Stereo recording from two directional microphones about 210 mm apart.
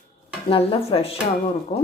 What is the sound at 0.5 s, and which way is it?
A woman's voice, 25° left (ahead or behind).